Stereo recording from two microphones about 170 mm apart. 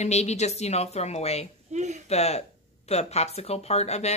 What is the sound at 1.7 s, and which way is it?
Speech, 45° right (ahead or behind).